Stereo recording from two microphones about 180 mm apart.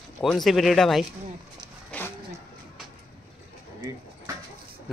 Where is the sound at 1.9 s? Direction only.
10° left (ahead or behind).